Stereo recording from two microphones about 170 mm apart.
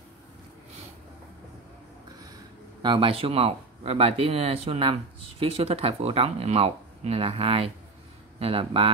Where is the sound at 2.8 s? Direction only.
30° right (ahead or behind).